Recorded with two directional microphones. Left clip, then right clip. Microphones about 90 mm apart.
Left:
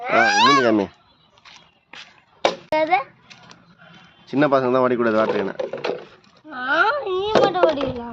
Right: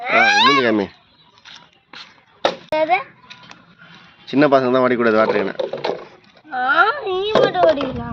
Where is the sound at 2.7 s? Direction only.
45° left (ahead or behind).